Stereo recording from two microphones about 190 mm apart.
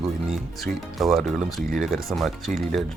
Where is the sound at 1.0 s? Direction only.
Centre (ahead or behind).